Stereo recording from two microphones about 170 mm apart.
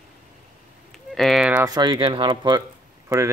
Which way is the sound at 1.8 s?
30° right (ahead or behind).